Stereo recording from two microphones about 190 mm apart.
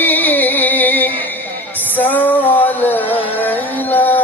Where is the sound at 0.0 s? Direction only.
10° left (ahead or behind).